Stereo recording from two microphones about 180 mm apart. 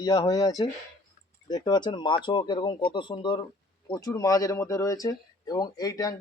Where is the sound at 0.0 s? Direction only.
20° left (ahead or behind).